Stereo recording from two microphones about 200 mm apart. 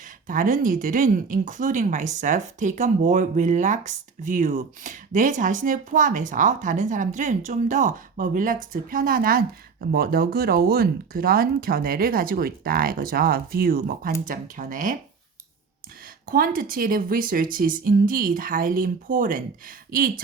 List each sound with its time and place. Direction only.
0.3 s speech: 45° right (ahead or behind)
16.3 s speech: 45° right (ahead or behind)